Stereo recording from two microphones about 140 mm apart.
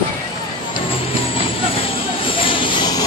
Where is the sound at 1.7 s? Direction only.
40° left (ahead or behind).